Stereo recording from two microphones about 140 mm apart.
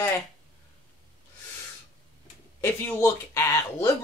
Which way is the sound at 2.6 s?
20° left (ahead or behind).